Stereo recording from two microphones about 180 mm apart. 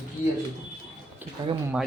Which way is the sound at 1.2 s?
10° right (ahead or behind).